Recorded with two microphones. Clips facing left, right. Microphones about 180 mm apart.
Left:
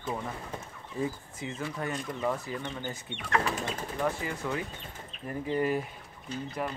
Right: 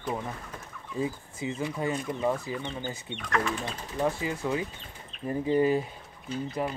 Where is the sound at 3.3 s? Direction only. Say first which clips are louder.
Even; 35° left (ahead or behind).